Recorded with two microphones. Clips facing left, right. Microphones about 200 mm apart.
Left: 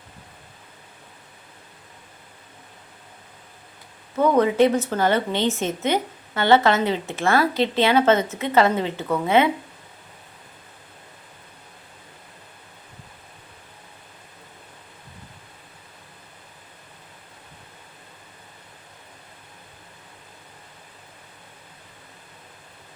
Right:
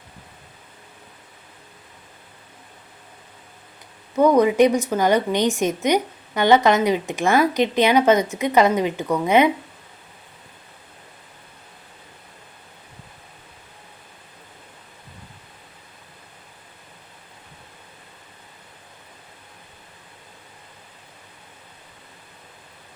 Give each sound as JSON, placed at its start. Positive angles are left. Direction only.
{"t": 4.2, "sound": "a woman's voice", "side_deg": -15}